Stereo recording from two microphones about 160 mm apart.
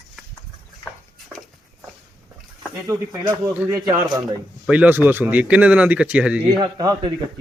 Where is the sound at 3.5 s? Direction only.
10° right (ahead or behind).